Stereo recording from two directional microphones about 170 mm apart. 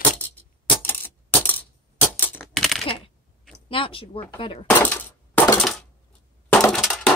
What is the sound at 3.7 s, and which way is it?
Speech, 30° left (ahead or behind).